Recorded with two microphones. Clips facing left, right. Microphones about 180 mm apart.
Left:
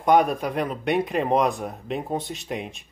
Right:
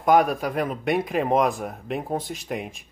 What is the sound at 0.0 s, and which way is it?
Speech, centre (ahead or behind).